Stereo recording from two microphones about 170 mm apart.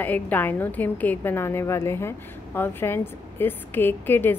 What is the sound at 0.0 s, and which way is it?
A woman's voice, 10° left (ahead or behind).